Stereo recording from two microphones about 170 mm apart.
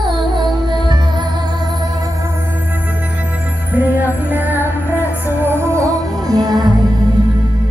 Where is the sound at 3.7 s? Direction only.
10° right (ahead or behind).